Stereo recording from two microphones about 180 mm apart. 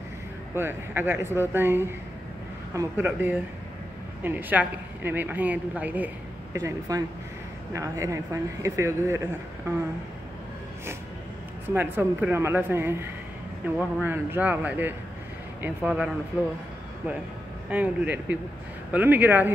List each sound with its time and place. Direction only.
0.6 s a woman's voice: 10° right (ahead or behind)
11.7 s a woman's voice: 10° right (ahead or behind)
17.6 s a woman's voice: 10° right (ahead or behind)